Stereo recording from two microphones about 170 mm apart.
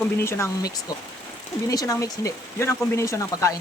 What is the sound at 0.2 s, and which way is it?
Speech, 15° left (ahead or behind).